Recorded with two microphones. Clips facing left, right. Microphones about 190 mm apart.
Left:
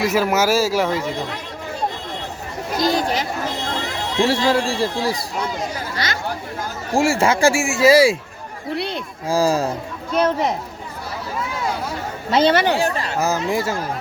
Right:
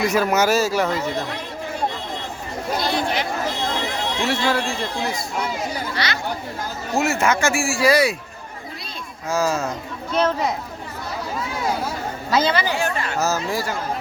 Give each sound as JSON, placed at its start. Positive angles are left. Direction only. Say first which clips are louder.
{"t": 0.0, "sound": "speech", "louder": "left 1 dB", "side_deg": 5}
{"t": 2.8, "sound": "a sound", "louder": "left 5 dB", "side_deg": 40}
{"t": 4.2, "sound": "speech", "louder": "left 5 dB", "side_deg": 30}
{"t": 6.9, "sound": "speech", "louder": "left 3 dB", "side_deg": 30}
{"t": 8.7, "sound": "a sound", "louder": "left 13 dB", "side_deg": 70}
{"t": 9.3, "sound": "speech", "louder": "left 4 dB", "side_deg": 35}
{"t": 10.2, "sound": "speech", "louder": "left 2 dB", "side_deg": 15}
{"t": 12.3, "sound": "speech", "louder": "left 5 dB", "side_deg": 30}
{"t": 13.1, "sound": "speech", "louder": "left 3 dB", "side_deg": 15}